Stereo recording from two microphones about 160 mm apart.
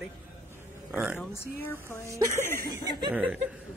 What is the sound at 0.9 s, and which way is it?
Speech, 10° right (ahead or behind).